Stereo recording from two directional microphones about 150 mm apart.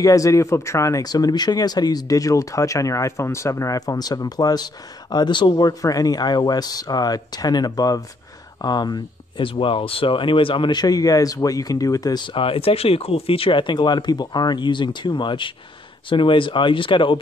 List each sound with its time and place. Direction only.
0.0 s speech: 20° left (ahead or behind)